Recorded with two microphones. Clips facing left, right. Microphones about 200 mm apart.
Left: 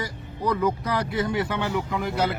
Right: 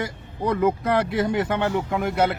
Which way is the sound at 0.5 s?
50° right (ahead or behind).